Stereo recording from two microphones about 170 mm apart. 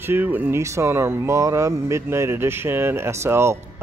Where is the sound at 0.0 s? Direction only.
10° right (ahead or behind).